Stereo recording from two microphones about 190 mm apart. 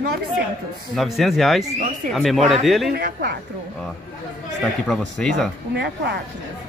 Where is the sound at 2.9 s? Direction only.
55° right (ahead or behind).